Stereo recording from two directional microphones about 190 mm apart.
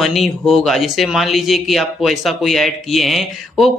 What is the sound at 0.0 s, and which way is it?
Speech, centre (ahead or behind).